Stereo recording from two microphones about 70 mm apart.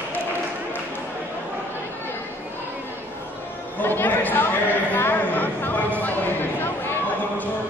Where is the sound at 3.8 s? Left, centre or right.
Left.